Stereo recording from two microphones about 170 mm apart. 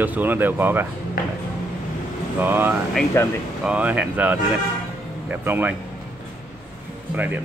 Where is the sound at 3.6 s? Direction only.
5° right (ahead or behind).